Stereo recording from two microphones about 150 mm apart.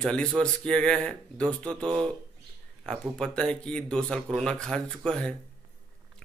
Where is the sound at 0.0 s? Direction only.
5° left (ahead or behind).